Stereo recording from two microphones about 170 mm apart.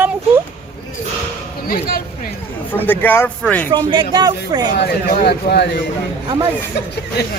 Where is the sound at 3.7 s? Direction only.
25° right (ahead or behind).